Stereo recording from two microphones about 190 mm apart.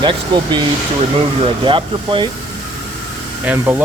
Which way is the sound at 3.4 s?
10° right (ahead or behind).